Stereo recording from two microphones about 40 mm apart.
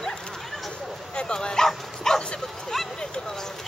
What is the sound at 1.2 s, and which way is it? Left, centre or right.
Dog, left.